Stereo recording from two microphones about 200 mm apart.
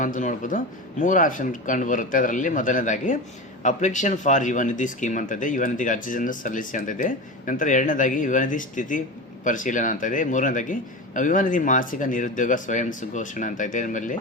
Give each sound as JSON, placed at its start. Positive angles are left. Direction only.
{"t": 0.0, "sound": "speech", "side_deg": 40}